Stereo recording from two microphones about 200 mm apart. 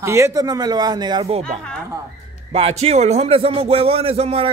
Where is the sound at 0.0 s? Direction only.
15° right (ahead or behind).